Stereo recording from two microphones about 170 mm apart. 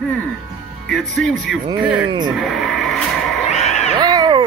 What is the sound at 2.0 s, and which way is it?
Speech, 25° right (ahead or behind).